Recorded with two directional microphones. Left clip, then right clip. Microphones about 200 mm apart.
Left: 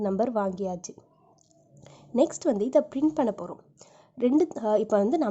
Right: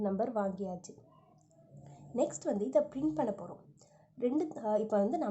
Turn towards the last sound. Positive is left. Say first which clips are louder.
# left 8 dB
turn(degrees=35)  # may be behind; listen again after turning